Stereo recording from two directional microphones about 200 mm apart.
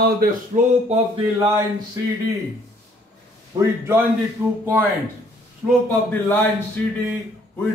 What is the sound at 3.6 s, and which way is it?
Speech, 10° right (ahead or behind).